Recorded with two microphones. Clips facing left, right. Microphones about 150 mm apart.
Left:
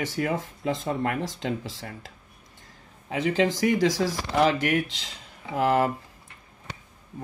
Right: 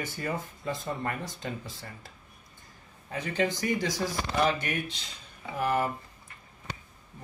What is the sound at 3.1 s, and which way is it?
Speech, 90° left.